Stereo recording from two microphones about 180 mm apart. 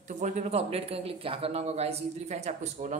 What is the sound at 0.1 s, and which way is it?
Speech, 45° right (ahead or behind).